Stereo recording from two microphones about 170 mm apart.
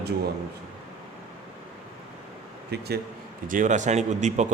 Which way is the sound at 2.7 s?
75° right (ahead or behind).